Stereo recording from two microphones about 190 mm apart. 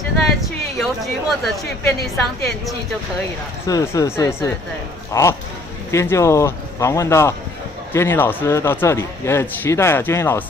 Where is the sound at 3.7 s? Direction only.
15° left (ahead or behind).